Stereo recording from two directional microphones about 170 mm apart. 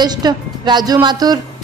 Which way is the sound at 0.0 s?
25° right (ahead or behind).